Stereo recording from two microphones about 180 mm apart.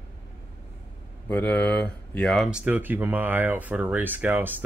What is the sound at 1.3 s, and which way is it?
Speech, 10° left (ahead or behind).